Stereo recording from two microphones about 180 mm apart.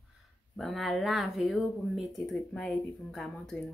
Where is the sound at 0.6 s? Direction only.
Centre (ahead or behind).